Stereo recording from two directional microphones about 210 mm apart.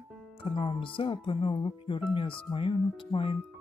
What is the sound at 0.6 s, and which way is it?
Speech, 25° left (ahead or behind).